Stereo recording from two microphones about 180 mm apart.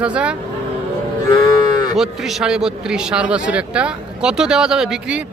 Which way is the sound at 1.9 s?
Centre (ahead or behind).